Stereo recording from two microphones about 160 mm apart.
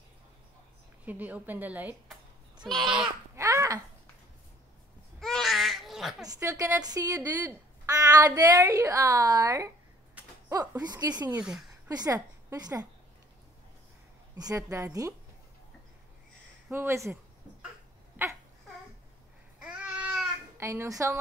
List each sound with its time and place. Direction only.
1.0 s a woman's voice: 10° right (ahead or behind)
3.3 s babbling: 20° right (ahead or behind)
5.2 s baby cry: centre (ahead or behind)
6.2 s speech: 20° right (ahead or behind)
11.2 s a woman's voice: 5° right (ahead or behind)
11.9 s a woman's voice: 20° right (ahead or behind)
14.3 s speech: 20° right (ahead or behind)
16.6 s speech: 15° right (ahead or behind)
18.2 s babbling: 10° right (ahead or behind)
19.6 s babbling: 5° right (ahead or behind)